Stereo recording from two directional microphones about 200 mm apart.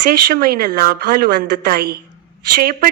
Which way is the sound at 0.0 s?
50° right (ahead or behind).